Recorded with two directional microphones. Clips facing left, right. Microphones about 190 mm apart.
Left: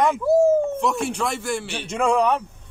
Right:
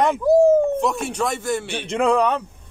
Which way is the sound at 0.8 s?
20° right (ahead or behind).